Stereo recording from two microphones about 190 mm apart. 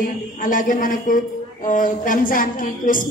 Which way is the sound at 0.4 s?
45° left (ahead or behind).